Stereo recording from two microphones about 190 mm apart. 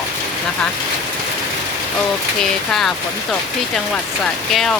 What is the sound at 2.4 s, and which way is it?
Speech, centre (ahead or behind).